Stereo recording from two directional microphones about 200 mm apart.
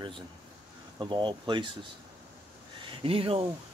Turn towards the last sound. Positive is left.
turn(degrees=-30)  # may be behind; listen again after turning